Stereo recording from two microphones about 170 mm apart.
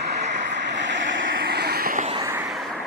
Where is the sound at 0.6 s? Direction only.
90° right; by 2.1 s 55° right (ahead or behind).